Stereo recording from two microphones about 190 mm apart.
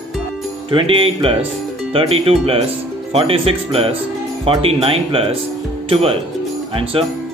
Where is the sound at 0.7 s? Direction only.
30° right (ahead or behind).